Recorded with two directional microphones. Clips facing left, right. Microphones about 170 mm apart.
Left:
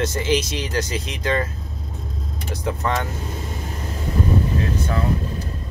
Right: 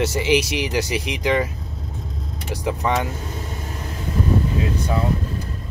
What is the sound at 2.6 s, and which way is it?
Speech, 15° right (ahead or behind).